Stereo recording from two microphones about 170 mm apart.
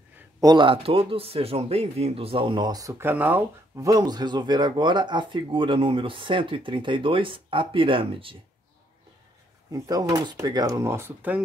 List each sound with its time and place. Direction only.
0.4 s a man's voice: 25° right (ahead or behind)
9.7 s a man's voice: 20° right (ahead or behind)